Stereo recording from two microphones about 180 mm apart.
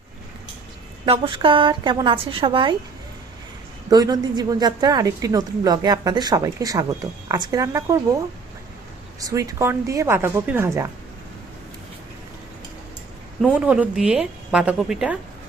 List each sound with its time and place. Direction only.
1.0 s a woman's voice: 30° right (ahead or behind)
3.8 s a woman's voice: 20° right (ahead or behind)
9.2 s a woman's voice: 20° right (ahead or behind)
13.4 s a woman's voice: 5° right (ahead or behind)